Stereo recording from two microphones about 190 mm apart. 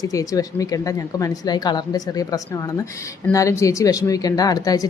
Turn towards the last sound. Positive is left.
turn(degrees=20)  # may be behind; listen again after turning